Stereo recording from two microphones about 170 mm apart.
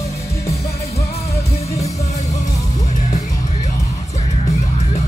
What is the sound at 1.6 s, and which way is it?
Music, 40° left (ahead or behind).